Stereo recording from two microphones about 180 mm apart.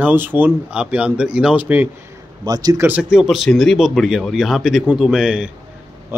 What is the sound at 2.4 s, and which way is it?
Speech, 20° right (ahead or behind).